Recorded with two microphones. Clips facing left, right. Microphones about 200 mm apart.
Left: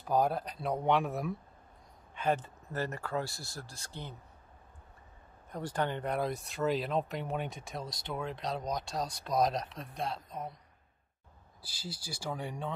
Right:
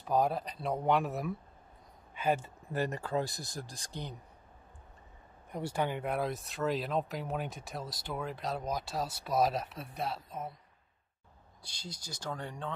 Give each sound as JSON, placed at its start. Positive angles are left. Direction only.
{"t": 0.0, "sound": "speech", "side_deg": 0}
{"t": 5.5, "sound": "speech", "side_deg": -10}
{"t": 11.6, "sound": "speech", "side_deg": 5}